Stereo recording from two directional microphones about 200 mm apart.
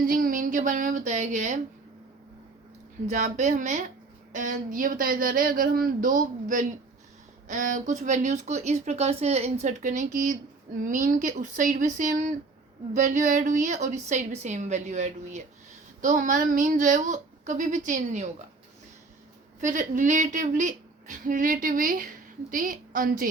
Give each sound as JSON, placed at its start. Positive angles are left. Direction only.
{"t": 0.1, "sound": "a woman's voice", "side_deg": -45}
{"t": 3.1, "sound": "a woman's voice", "side_deg": -35}
{"t": 19.6, "sound": "speech", "side_deg": -40}